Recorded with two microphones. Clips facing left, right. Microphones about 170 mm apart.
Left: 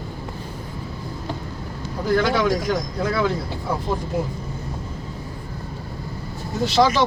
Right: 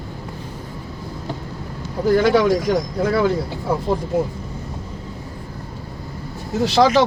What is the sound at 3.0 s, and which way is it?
Speech, 50° right (ahead or behind).